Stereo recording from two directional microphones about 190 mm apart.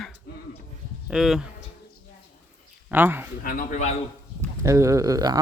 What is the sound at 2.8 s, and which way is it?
Speech, 10° right (ahead or behind).